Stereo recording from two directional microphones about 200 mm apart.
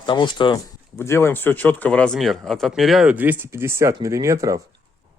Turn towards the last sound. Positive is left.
turn(degrees=-15)  # may be behind; listen again after turning